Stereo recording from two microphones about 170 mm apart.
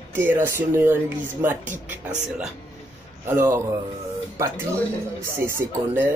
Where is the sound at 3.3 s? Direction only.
15° right (ahead or behind).